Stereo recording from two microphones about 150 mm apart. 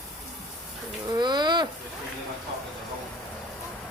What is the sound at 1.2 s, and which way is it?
Speech, 30° right (ahead or behind).